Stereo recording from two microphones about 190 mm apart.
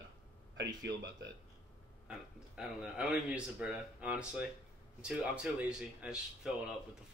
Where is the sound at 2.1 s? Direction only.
5° right (ahead or behind).